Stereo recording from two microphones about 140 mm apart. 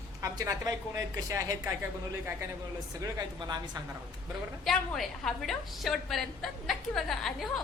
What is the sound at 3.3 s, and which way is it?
Speech, 30° right (ahead or behind).